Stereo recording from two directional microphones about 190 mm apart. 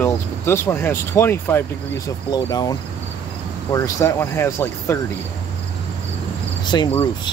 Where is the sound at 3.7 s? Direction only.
15° left (ahead or behind).